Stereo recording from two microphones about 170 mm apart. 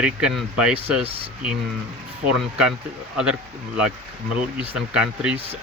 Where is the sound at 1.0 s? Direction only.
35° right (ahead or behind).